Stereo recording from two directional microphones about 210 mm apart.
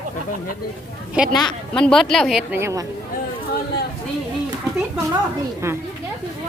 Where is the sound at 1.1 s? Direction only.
5° right (ahead or behind).